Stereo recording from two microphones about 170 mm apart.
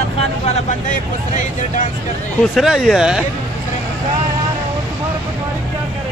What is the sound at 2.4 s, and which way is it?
Speech, centre (ahead or behind).